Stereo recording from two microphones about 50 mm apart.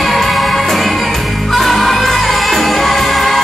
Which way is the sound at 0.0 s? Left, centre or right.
Centre.